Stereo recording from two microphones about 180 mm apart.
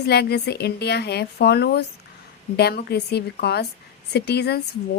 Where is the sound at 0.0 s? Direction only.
65° left (ahead or behind).